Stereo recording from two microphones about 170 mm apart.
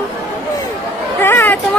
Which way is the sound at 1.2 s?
15° left (ahead or behind).